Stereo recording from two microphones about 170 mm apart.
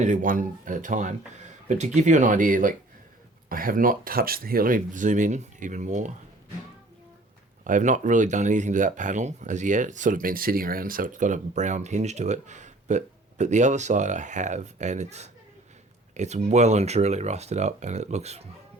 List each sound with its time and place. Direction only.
0.0 s speech: 50° right (ahead or behind)
7.6 s speech: 50° right (ahead or behind)